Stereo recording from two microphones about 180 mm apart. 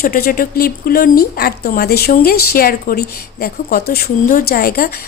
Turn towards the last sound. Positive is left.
turn(degrees=55)  # may be behind; listen again after turning